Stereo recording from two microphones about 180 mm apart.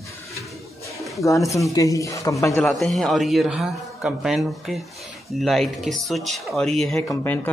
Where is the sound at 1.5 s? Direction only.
20° left (ahead or behind).